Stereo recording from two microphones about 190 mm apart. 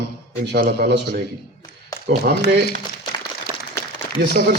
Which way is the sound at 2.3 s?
50° right (ahead or behind).